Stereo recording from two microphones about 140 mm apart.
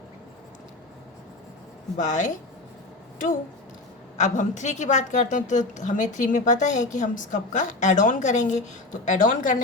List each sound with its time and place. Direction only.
2.0 s a woman's voice: 65° left (ahead or behind)
4.2 s a woman's voice: 60° left (ahead or behind)